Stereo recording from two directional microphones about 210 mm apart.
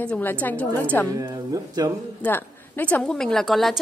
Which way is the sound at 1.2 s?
15° right (ahead or behind).